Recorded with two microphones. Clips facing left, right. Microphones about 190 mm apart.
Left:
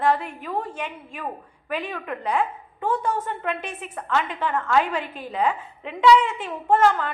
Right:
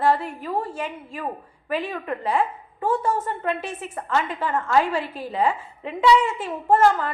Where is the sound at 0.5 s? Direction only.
5° right (ahead or behind).